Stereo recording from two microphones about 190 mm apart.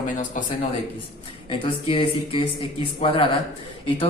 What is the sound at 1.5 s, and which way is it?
A man's voice, 25° left (ahead or behind).